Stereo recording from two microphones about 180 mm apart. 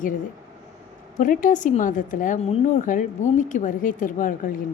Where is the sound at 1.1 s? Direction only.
45° left (ahead or behind).